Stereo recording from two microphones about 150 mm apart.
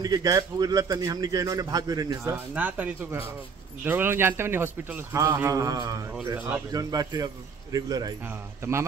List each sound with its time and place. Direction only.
0.0 s a man's voice: 25° right (ahead or behind)
2.3 s a man's voice: 10° right (ahead or behind)